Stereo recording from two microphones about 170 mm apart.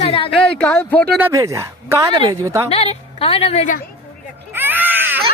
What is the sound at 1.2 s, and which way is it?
A woman's voice, 15° right (ahead or behind).